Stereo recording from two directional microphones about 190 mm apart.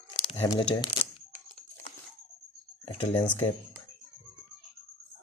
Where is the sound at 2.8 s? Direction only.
30° left (ahead or behind).